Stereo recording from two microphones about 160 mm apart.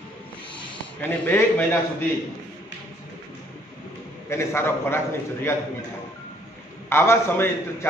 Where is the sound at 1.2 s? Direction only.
15° left (ahead or behind).